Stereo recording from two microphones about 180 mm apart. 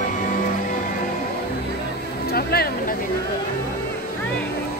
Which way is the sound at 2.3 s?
60° left (ahead or behind).